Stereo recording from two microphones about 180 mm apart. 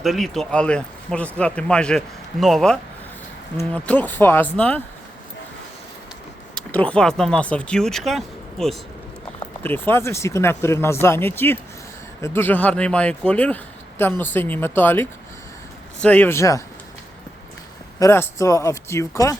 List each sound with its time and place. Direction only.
0.0 s speech: centre (ahead or behind)
6.5 s speech: 5° left (ahead or behind)
9.6 s speech: 10° left (ahead or behind)
18.0 s speech: 15° left (ahead or behind)